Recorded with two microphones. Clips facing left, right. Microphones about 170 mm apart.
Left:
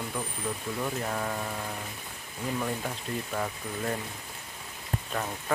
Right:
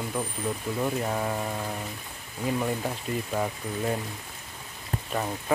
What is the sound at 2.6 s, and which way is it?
Speech, 15° right (ahead or behind).